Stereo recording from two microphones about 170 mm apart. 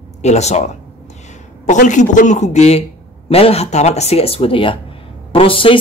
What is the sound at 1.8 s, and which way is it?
A man's voice, 45° left (ahead or behind).